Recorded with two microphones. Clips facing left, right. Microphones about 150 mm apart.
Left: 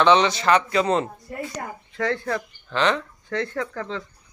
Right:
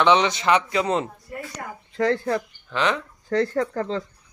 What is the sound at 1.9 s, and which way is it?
Speech, 35° right (ahead or behind).